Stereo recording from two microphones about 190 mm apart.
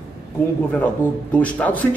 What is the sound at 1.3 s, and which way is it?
Speech, 5° left (ahead or behind).